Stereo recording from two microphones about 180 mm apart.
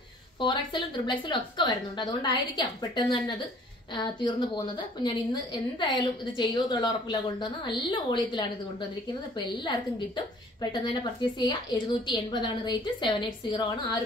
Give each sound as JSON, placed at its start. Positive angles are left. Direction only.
{"t": 0.4, "sound": "a woman's voice", "side_deg": 25}
{"t": 9.7, "sound": "a woman's voice", "side_deg": 25}